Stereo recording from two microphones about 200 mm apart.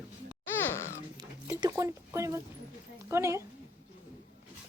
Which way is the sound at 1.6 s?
15° right (ahead or behind).